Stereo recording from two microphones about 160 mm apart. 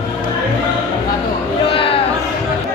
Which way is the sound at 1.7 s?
35° left (ahead or behind).